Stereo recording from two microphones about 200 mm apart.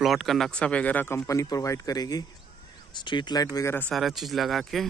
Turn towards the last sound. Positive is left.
turn(degrees=0)  # may be behind; listen again after turning